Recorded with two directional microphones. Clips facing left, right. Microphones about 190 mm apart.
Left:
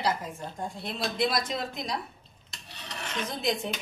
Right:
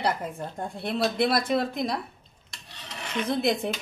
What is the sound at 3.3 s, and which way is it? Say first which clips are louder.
Speech: right 6 dB; 60° right (ahead or behind).